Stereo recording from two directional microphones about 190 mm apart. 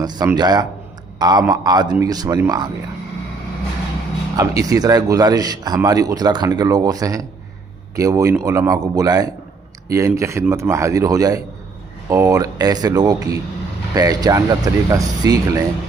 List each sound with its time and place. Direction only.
0.0 s a man's voice: 20° right (ahead or behind)
4.4 s a man's voice: 20° right (ahead or behind)